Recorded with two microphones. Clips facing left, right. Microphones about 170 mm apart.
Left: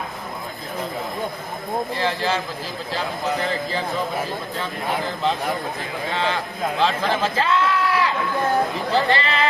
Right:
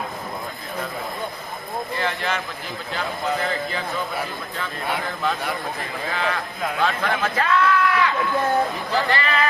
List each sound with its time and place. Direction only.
2.0 s speech: 30° left (ahead or behind)
3.4 s speech: 30° left (ahead or behind)
6.1 s speech: 30° left (ahead or behind)